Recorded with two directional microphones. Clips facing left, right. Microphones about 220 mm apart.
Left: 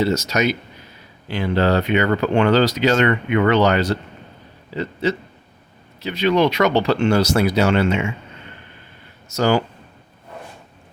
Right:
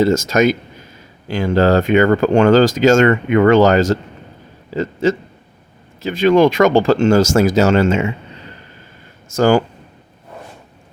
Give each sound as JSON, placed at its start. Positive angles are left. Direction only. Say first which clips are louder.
{"t": 0.0, "sound": "speech", "louder": "right 6 dB", "side_deg": -50}